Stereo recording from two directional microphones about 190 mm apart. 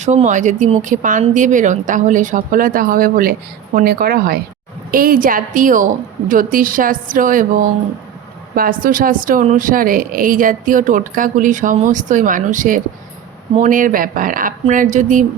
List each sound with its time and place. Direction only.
0.0 s speech: 35° right (ahead or behind)
8.5 s speech: 50° right (ahead or behind)